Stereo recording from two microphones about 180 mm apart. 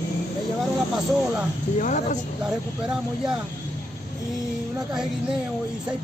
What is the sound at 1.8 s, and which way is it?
Speech, 45° left (ahead or behind).